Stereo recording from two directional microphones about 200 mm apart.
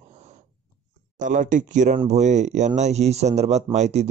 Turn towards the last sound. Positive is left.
turn(degrees=-35)  # may be behind; listen again after turning